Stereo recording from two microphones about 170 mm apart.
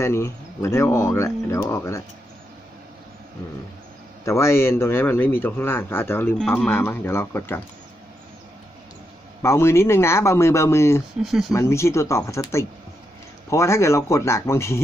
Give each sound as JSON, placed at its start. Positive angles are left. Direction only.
{"t": 0.0, "sound": "a man's voice", "side_deg": 15}
{"t": 4.2, "sound": "a man's voice", "side_deg": 15}
{"t": 9.4, "sound": "a man's voice", "side_deg": 15}
{"t": 11.2, "sound": "speech", "side_deg": 0}
{"t": 11.5, "sound": "a man's voice", "side_deg": 15}